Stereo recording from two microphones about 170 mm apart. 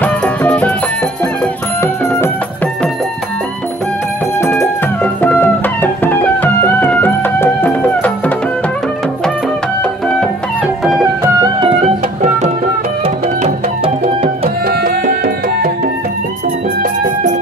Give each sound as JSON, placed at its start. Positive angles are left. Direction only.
{"t": 0.0, "sound": "music", "side_deg": 10}
{"t": 4.4, "sound": "music", "side_deg": 15}
{"t": 9.8, "sound": "music", "side_deg": 5}
{"t": 13.0, "sound": "music", "side_deg": -35}
{"t": 14.7, "sound": "music", "side_deg": -65}
{"t": 16.8, "sound": "music", "side_deg": -50}